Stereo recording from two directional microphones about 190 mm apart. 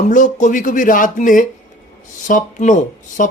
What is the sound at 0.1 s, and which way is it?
Speech, 45° left (ahead or behind).